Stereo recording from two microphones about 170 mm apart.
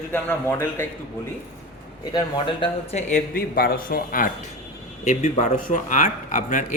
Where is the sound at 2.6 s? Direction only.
40° left (ahead or behind).